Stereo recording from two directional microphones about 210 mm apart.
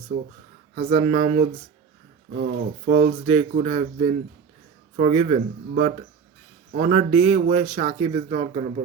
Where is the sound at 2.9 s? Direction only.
30° right (ahead or behind).